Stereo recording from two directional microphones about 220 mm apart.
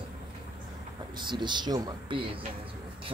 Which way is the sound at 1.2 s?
20° right (ahead or behind).